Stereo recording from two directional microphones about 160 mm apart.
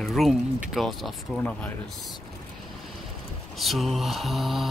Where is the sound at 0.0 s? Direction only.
Centre (ahead or behind).